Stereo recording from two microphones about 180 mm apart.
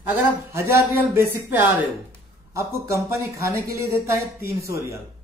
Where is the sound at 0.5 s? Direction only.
15° right (ahead or behind).